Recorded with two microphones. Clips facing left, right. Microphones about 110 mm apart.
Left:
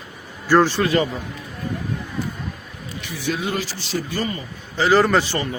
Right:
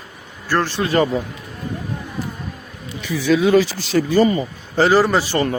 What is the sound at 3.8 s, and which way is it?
Speech, 65° right (ahead or behind).